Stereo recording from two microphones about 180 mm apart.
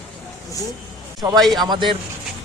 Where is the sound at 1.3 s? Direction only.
Centre (ahead or behind).